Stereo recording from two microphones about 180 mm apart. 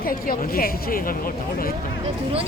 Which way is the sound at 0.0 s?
55° left (ahead or behind).